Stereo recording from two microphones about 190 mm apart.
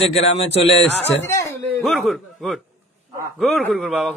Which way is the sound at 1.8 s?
Centre (ahead or behind).